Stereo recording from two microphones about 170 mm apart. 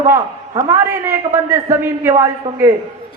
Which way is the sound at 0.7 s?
15° right (ahead or behind).